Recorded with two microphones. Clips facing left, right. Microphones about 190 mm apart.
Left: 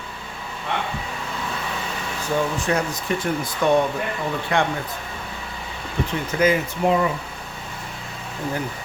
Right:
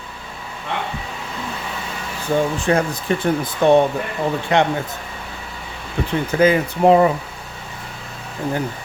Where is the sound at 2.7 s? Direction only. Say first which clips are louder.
Right 4 dB; 30° right (ahead or behind).